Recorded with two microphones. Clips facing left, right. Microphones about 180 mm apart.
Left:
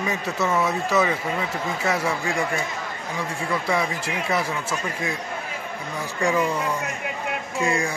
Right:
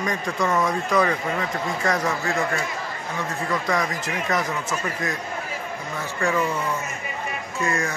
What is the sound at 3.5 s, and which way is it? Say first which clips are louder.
Speech: left 1 dB; 10° left (ahead or behind).